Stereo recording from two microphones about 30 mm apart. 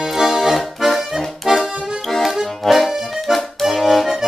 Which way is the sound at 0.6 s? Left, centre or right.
Centre.